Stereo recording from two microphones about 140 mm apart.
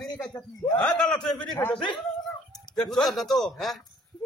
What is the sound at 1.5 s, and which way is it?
Speech, 15° left (ahead or behind).